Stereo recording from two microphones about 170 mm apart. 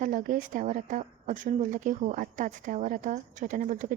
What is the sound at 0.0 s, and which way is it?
A woman's voice, 45° right (ahead or behind).